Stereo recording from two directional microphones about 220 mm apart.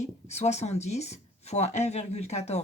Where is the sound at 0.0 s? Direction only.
30° left (ahead or behind).